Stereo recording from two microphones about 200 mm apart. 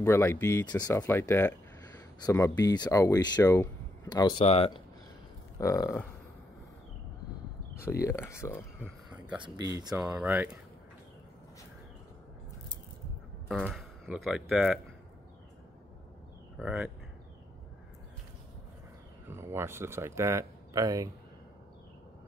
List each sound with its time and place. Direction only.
0.0 s speech: 10° left (ahead or behind)
4.4 s speech: 30° left (ahead or behind)
5.6 s speech: 15° left (ahead or behind)
8.0 s speech: 10° left (ahead or behind)
8.7 s a sound: 5° right (ahead or behind)
9.4 s speech: 20° right (ahead or behind)
9.8 s speech: 10° right (ahead or behind)
13.5 s speech: centre (ahead or behind)
16.5 s speech: 5° right (ahead or behind)
19.2 s speech: 10° right (ahead or behind)